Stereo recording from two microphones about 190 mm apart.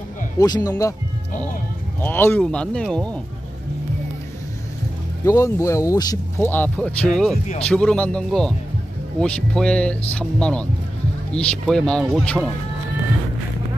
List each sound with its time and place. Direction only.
0.4 s speech: 20° left (ahead or behind)
2.0 s speech: 10° left (ahead or behind)
5.2 s speech: 15° left (ahead or behind)